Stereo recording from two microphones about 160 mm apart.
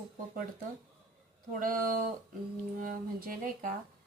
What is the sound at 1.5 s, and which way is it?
A woman's voice, 60° right (ahead or behind).